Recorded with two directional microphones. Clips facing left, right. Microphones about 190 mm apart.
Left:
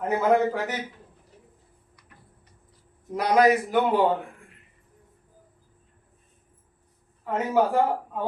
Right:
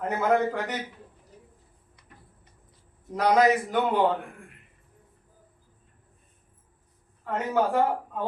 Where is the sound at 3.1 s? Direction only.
10° left (ahead or behind).